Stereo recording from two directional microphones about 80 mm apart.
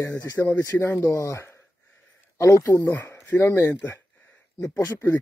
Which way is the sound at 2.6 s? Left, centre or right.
Left.